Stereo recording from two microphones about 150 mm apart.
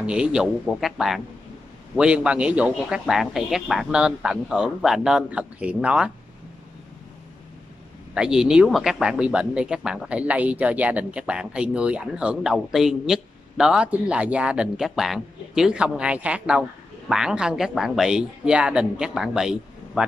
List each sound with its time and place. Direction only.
0.0 s a man's voice: 5° right (ahead or behind)
8.1 s a man's voice: 5° right (ahead or behind)